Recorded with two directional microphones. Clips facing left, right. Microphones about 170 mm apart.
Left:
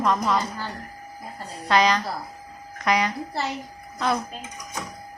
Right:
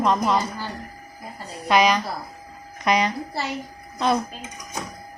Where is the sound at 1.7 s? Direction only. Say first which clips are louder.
Right 2 dB; 15° right (ahead or behind).